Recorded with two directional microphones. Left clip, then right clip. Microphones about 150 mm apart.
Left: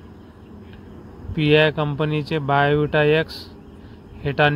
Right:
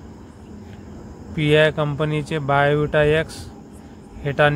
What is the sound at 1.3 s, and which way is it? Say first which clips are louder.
Speech: even; 25° left (ahead or behind).